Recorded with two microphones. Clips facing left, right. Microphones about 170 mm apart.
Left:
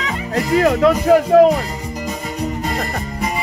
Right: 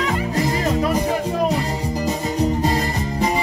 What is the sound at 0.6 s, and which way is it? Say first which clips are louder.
Speech: left 10 dB; 85° left.